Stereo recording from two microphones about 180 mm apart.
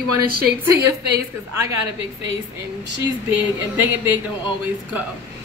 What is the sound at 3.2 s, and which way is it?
Speech, 10° right (ahead or behind).